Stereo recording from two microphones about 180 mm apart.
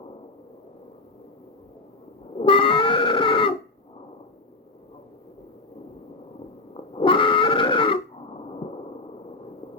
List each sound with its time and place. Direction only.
2.4 s music: 30° left (ahead or behind)
6.9 s pig: 30° left (ahead or behind)